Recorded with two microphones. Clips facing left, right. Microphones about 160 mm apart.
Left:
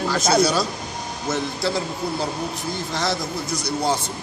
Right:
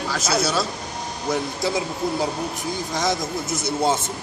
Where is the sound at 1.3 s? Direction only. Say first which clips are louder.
Even; 20° right (ahead or behind).